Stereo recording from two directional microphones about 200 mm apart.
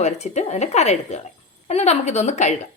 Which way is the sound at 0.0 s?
35° left (ahead or behind).